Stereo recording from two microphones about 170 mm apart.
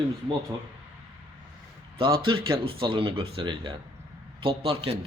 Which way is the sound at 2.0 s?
30° right (ahead or behind).